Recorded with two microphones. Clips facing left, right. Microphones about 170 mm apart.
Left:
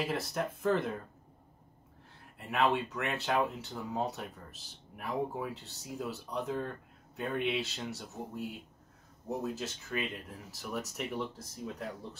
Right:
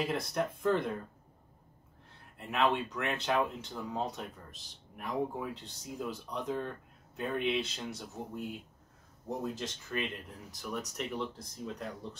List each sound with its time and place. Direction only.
0.0 s speech: centre (ahead or behind)
2.3 s speech: centre (ahead or behind)